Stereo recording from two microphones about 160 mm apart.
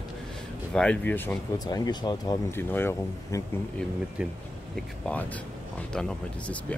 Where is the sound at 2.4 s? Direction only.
15° left (ahead or behind).